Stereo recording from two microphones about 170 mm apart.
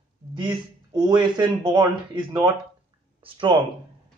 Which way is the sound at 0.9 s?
25° right (ahead or behind).